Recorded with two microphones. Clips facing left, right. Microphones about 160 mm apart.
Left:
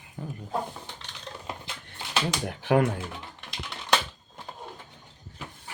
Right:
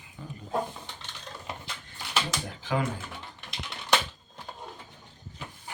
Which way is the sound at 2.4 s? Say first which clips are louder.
Left 7 dB; 65° left (ahead or behind).